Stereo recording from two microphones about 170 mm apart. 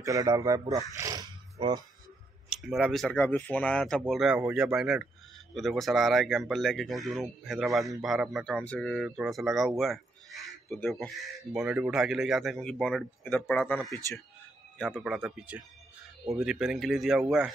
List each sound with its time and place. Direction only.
0.0 s speech: 20° right (ahead or behind)
2.5 s speech: centre (ahead or behind)
15.0 s speech: centre (ahead or behind)